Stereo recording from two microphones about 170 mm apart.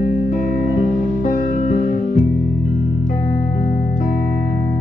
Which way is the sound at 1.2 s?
55° left (ahead or behind).